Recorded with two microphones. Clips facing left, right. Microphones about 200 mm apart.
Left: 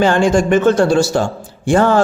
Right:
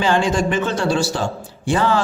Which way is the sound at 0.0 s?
50° left (ahead or behind).